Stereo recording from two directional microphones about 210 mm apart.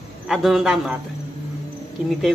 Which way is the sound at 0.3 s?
Centre (ahead or behind).